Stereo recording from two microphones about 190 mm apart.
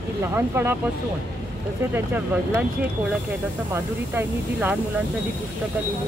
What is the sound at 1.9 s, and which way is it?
Speech, 10° right (ahead or behind).